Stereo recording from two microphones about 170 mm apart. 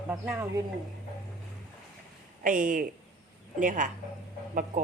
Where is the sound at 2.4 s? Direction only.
50° right (ahead or behind).